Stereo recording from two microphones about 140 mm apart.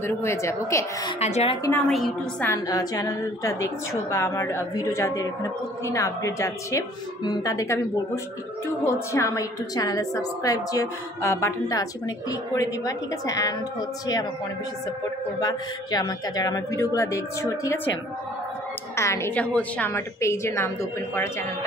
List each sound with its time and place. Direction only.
0.0 s a woman's voice: 20° left (ahead or behind)
1.2 s a woman's voice: 50° left (ahead or behind)
1.9 s a woman's voice: centre (ahead or behind)
2.4 s a woman's voice: 25° left (ahead or behind)
15.4 s a woman's voice: 30° left (ahead or behind)
18.9 s a woman's voice: 20° left (ahead or behind)